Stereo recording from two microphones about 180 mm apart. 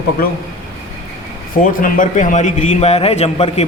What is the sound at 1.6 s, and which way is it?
A man's voice, 45° left (ahead or behind).